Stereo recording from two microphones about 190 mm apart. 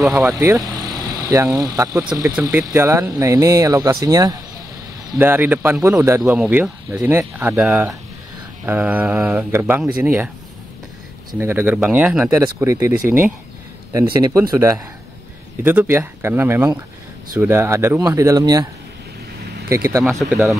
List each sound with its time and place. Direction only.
0.0 s speech: centre (ahead or behind)
0.3 s speech: 15° right (ahead or behind)
11.3 s speech: 10° right (ahead or behind)
15.6 s speech: 10° right (ahead or behind)
19.7 s speech: 15° right (ahead or behind)